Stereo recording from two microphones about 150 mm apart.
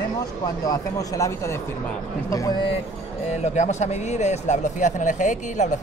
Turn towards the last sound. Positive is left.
turn(degrees=55)  # may be behind; listen again after turning